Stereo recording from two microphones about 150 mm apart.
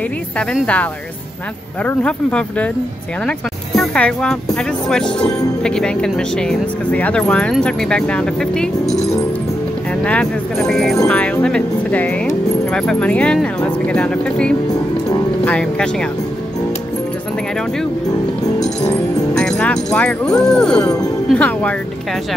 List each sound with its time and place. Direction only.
0.4 s speech: 5° left (ahead or behind)
1.9 s speech: 10° left (ahead or behind)
10.0 s speech: 5° left (ahead or behind)
19.3 s speech: 5° left (ahead or behind)